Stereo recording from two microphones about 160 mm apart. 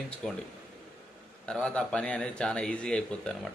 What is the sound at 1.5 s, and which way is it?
Speech, 5° left (ahead or behind).